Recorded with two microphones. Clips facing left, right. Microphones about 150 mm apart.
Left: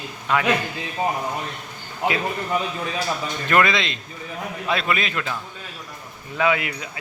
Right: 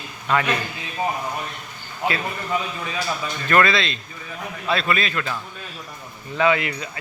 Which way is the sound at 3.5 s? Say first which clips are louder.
Right 1 dB; 15° left (ahead or behind).